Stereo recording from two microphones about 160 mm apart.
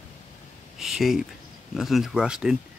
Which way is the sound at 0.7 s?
Centre (ahead or behind).